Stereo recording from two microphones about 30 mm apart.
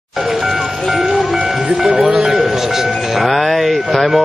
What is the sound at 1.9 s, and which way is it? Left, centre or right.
Speech, right.